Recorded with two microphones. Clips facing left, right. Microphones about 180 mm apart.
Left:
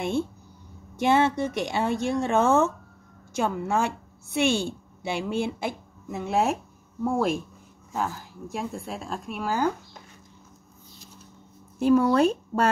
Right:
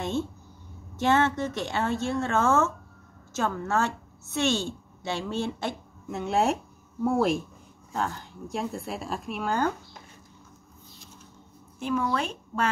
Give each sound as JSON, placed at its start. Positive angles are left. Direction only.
{"t": 0.9, "sound": "a woman's voice", "side_deg": 15}
{"t": 11.8, "sound": "speech", "side_deg": 40}